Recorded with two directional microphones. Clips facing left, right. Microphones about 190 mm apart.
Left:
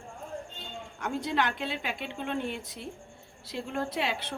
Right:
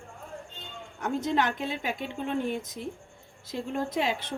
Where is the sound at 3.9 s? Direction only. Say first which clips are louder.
Right 3 dB; 45° right (ahead or behind).